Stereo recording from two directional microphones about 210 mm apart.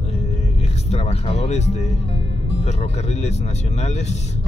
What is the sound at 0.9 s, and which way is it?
Speech, 30° left (ahead or behind).